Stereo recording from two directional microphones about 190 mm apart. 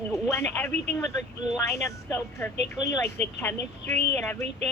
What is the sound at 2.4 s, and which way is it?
Speech, 10° left (ahead or behind).